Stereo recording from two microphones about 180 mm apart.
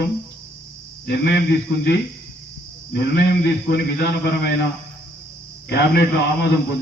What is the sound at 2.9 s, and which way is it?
A man's voice, 65° left (ahead or behind).